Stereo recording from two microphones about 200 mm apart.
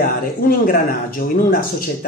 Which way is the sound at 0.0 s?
45° left (ahead or behind).